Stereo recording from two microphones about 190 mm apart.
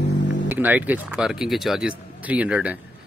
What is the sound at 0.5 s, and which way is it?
Speech, 10° right (ahead or behind).